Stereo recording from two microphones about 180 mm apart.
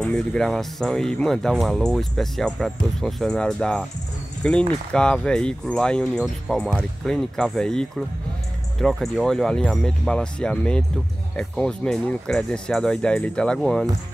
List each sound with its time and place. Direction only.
0.0 s speech: 5° left (ahead or behind)